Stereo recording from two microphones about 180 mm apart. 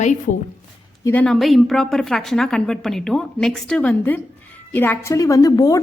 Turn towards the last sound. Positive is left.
turn(degrees=20)  # may be behind; listen again after turning